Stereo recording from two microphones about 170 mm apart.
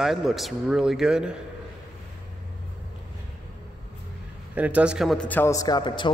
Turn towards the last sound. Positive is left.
turn(degrees=25)  # may be behind; listen again after turning